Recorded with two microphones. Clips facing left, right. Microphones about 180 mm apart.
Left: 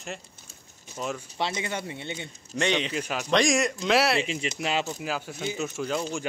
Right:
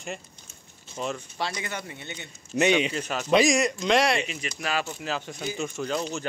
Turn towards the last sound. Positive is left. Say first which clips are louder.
# even
turn(degrees=5)  # may be behind; listen again after turning